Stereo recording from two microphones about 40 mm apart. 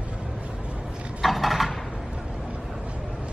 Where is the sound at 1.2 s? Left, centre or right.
Centre.